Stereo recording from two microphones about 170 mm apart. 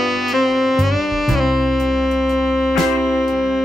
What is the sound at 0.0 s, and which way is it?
Music, centre (ahead or behind).